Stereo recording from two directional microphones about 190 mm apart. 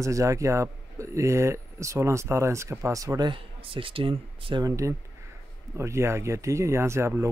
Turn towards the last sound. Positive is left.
turn(degrees=-15)  # may be behind; listen again after turning